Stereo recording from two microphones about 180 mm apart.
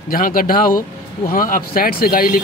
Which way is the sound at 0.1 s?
50° left (ahead or behind).